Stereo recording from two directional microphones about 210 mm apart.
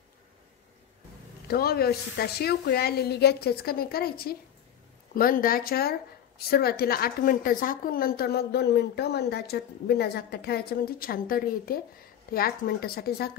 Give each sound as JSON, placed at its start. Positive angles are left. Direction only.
{"t": 1.5, "sound": "a woman's voice", "side_deg": 45}